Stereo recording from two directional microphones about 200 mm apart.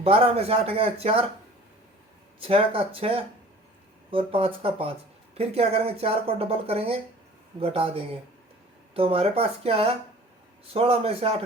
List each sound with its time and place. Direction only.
0.0 s speech: 30° right (ahead or behind)
2.4 s speech: 25° right (ahead or behind)